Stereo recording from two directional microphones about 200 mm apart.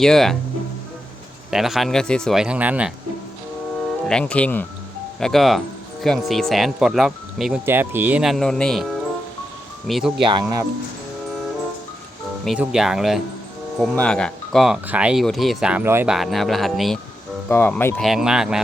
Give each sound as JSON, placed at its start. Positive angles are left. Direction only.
{"t": 0.0, "sound": "speech", "side_deg": 0}
{"t": 1.5, "sound": "speech", "side_deg": 0}
{"t": 4.0, "sound": "speech", "side_deg": 5}
{"t": 10.2, "sound": "speech", "side_deg": -25}
{"t": 12.5, "sound": "speech", "side_deg": -5}
{"t": 16.1, "sound": "speech", "side_deg": 0}